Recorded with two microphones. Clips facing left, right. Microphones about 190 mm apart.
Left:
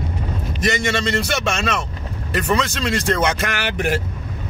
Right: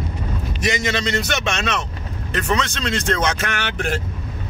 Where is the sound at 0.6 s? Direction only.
Centre (ahead or behind).